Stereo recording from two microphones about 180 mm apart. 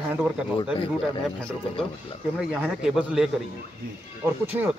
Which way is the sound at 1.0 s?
5° left (ahead or behind).